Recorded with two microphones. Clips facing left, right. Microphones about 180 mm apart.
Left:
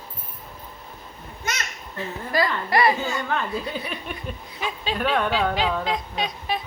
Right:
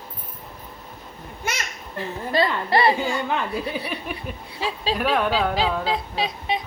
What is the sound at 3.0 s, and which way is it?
Speech, 15° right (ahead or behind).